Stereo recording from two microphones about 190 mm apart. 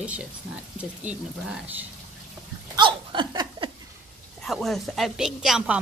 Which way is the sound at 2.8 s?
25° right (ahead or behind).